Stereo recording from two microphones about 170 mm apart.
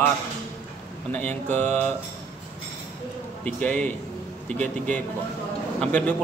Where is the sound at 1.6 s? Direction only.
10° left (ahead or behind).